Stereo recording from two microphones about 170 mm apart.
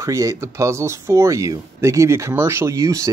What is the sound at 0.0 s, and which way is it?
Speech, 20° right (ahead or behind).